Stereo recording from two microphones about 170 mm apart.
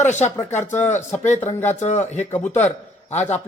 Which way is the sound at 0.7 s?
10° left (ahead or behind).